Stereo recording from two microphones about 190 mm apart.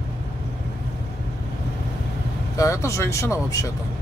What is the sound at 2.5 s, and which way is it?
Speech, 15° left (ahead or behind).